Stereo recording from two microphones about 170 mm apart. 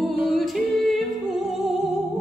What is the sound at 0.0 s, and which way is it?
Music, centre (ahead or behind).